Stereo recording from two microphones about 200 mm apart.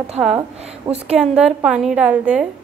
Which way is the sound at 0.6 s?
30° right (ahead or behind).